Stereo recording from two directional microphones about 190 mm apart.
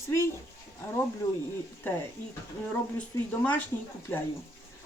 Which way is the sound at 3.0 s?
10° left (ahead or behind).